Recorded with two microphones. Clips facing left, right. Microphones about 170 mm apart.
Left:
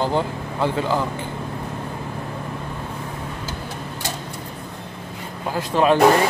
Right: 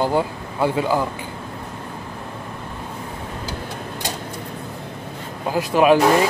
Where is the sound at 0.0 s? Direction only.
10° right (ahead or behind).